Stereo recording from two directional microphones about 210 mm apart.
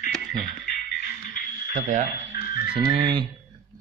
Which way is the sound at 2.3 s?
45° left (ahead or behind).